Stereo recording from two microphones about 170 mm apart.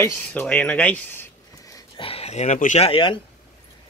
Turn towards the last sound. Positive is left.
turn(degrees=30)  # may be behind; listen again after turning